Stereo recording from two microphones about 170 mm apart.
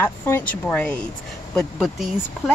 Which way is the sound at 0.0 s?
10° left (ahead or behind).